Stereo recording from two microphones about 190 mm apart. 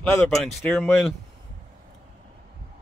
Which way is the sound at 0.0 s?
5° left (ahead or behind).